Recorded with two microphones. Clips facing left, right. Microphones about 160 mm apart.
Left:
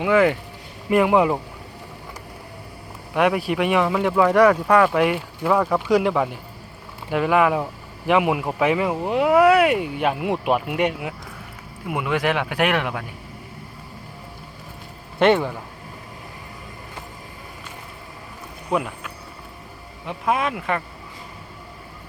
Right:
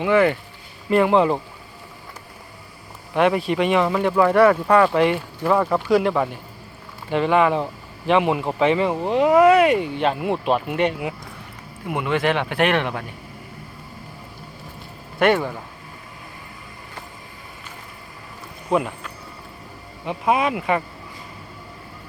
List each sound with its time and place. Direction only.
0.0 s speech: 10° left (ahead or behind)
3.2 s speech: 10° left (ahead or behind)
15.2 s speech: 20° left (ahead or behind)
18.7 s a sound: centre (ahead or behind)
20.1 s speech: 5° right (ahead or behind)